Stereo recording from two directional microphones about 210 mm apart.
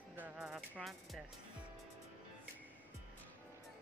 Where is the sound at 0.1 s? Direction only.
5° right (ahead or behind).